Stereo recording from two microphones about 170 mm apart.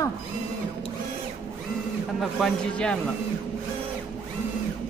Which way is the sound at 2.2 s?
5° left (ahead or behind).